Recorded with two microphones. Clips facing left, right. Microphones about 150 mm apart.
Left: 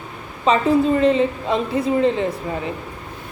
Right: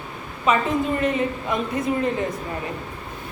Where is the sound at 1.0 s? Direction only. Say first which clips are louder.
Left 6 dB; 25° left (ahead or behind).